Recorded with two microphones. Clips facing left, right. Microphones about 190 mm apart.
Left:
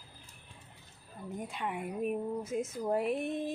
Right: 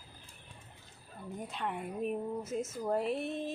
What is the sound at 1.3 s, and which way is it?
Speech, 10° left (ahead or behind).